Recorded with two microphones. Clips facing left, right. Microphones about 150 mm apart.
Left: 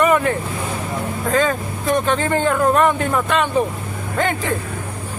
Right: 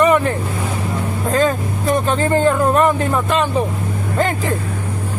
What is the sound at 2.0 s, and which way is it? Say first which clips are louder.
Speech: right 2 dB; 35° right (ahead or behind).